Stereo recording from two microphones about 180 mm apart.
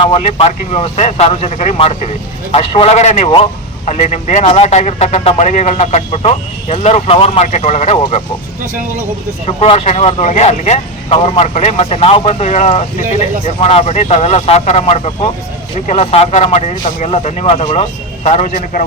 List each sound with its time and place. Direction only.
0.0 s a man's voice: 35° left (ahead or behind)
9.5 s a man's voice: 35° left (ahead or behind)